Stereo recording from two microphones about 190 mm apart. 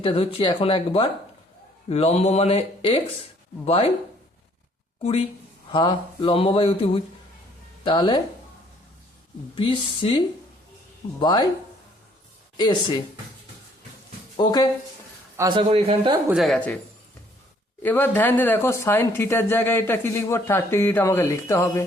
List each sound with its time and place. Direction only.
0.0 s speech: 30° left (ahead or behind)
5.7 s speech: 25° left (ahead or behind)
9.6 s speech: 25° left (ahead or behind)
12.5 s speech: 25° left (ahead or behind)
14.3 s speech: 20° left (ahead or behind)
15.4 s speech: 25° right (ahead or behind)
16.3 s speech: centre (ahead or behind)
17.8 s speech: 10° left (ahead or behind)